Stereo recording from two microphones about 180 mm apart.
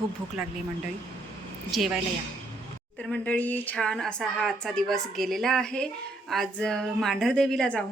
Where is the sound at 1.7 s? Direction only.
Centre (ahead or behind).